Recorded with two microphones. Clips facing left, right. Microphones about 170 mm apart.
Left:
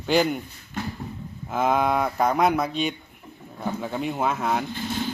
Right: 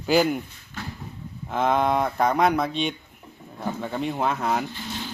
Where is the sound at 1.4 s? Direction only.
5° left (ahead or behind).